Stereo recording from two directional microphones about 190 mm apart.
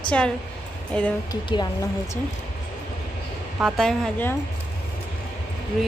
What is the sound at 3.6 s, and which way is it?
Speech, centre (ahead or behind).